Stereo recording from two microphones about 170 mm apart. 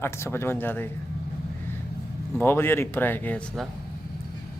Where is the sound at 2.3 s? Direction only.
15° left (ahead or behind).